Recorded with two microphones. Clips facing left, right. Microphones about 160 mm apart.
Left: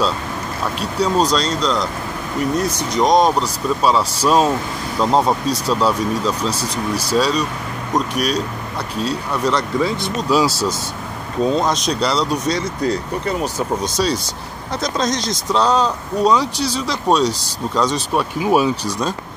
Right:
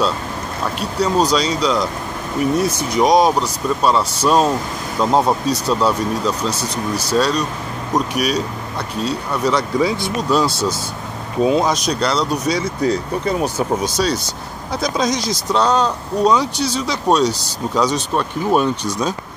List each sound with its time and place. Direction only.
0.7 s speech: centre (ahead or behind)
11.4 s speech: 10° right (ahead or behind)
13.9 s speech: centre (ahead or behind)